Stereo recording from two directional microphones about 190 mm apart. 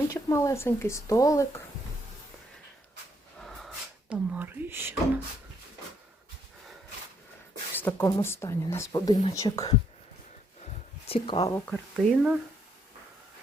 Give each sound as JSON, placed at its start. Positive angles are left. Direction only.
{"t": 0.1, "sound": "speech", "side_deg": 15}
{"t": 4.1, "sound": "speech", "side_deg": -10}
{"t": 7.8, "sound": "speech", "side_deg": 10}
{"t": 11.0, "sound": "a sound", "side_deg": 30}
{"t": 11.3, "sound": "speech", "side_deg": 15}
{"t": 11.7, "sound": "speech", "side_deg": 0}